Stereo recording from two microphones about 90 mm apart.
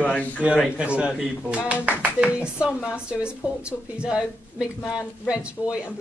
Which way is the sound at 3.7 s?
10° left (ahead or behind).